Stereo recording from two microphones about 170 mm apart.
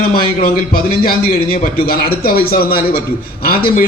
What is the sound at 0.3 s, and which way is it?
A man's voice, 60° left (ahead or behind).